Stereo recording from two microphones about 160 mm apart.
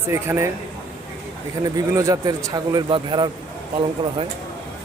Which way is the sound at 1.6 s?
20° right (ahead or behind).